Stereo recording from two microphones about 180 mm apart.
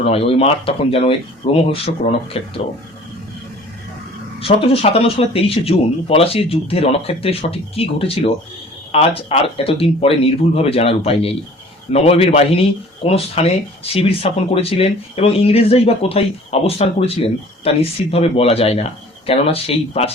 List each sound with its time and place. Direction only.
0.0 s speech: 35° left (ahead or behind)
4.4 s speech: 30° left (ahead or behind)